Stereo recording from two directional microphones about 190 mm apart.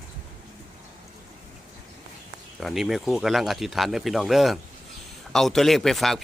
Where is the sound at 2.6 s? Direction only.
Centre (ahead or behind).